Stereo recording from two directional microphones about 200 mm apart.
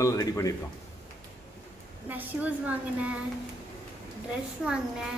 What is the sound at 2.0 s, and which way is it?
Speech, 10° right (ahead or behind).